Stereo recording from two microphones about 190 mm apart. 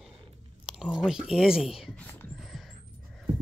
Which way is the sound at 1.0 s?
5° right (ahead or behind).